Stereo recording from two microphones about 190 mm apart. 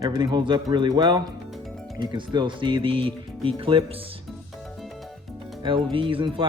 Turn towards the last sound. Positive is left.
turn(degrees=-25)  # may be behind; listen again after turning